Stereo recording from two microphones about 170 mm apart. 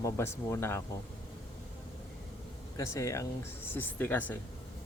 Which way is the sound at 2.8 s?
20° left (ahead or behind).